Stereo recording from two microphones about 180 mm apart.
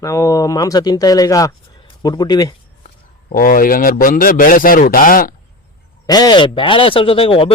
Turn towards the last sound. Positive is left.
turn(degrees=30)  # may be behind; listen again after turning